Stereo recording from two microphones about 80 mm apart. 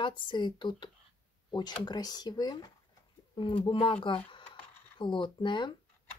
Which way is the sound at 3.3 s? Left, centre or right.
Left.